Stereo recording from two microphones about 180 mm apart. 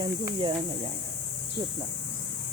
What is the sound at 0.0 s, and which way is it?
Speech, 30° right (ahead or behind).